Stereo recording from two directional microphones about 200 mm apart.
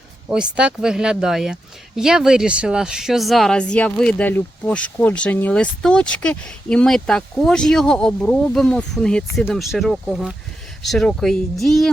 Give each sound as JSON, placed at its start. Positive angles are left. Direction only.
{"t": 0.3, "sound": "speech", "side_deg": -5}